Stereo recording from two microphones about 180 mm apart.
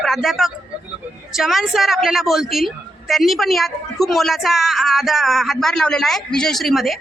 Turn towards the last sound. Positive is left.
turn(degrees=0)  # may be behind; listen again after turning